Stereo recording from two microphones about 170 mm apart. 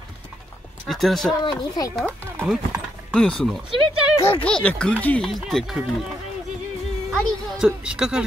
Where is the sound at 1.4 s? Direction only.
30° left (ahead or behind).